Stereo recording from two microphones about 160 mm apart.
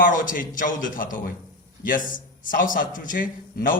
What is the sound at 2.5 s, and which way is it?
A man's voice, 60° left (ahead or behind).